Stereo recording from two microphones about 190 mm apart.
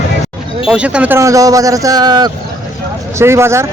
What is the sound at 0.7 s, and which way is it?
Speech, 5° right (ahead or behind).